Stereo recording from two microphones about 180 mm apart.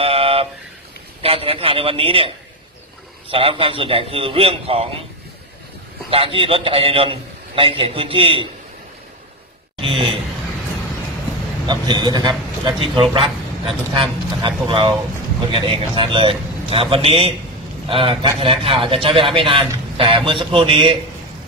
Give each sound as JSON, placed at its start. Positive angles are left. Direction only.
{"t": 0.0, "sound": "vehicle", "side_deg": -30}
{"t": 1.2, "sound": "a man's voice", "side_deg": -30}
{"t": 6.0, "sound": "a man's voice", "side_deg": -30}
{"t": 9.8, "sound": "a sound", "side_deg": -30}
{"t": 11.6, "sound": "a man's voice", "side_deg": -25}